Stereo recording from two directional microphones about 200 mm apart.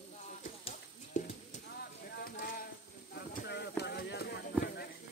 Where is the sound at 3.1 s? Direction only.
55° left (ahead or behind).